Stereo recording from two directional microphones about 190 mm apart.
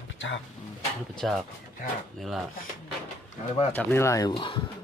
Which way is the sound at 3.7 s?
15° left (ahead or behind).